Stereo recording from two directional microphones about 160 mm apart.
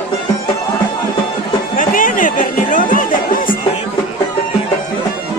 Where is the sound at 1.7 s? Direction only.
60° left (ahead or behind).